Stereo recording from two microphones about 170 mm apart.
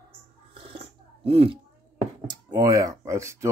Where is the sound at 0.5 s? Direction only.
30° right (ahead or behind).